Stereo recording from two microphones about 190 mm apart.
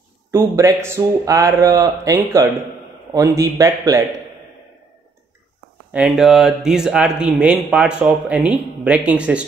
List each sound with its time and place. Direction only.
0.3 s speech: 15° right (ahead or behind)
5.9 s speech: 5° right (ahead or behind)